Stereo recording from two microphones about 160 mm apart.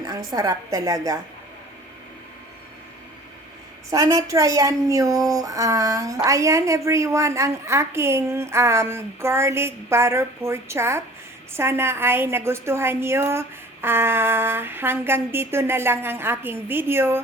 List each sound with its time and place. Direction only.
0.0 s a sound: 20° right (ahead or behind)
0.3 s a woman's voice: 20° right (ahead or behind)
3.8 s a woman's voice: 20° right (ahead or behind)